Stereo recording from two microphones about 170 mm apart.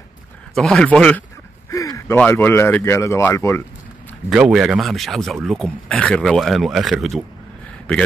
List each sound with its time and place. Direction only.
0.6 s speech: centre (ahead or behind)
1.7 s a sound: 20° left (ahead or behind)
2.1 s speech: 10° left (ahead or behind)
4.3 s speech: 5° right (ahead or behind)